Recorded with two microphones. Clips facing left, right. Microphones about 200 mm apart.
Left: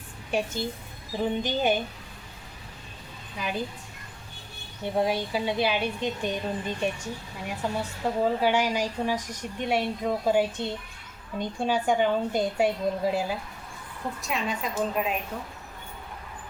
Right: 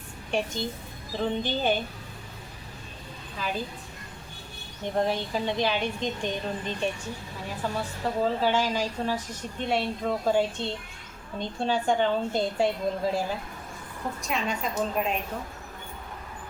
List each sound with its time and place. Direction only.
0.3 s a woman's voice: 5° left (ahead or behind)
3.4 s a woman's voice: 15° left (ahead or behind)
4.8 s a woman's voice: 10° left (ahead or behind)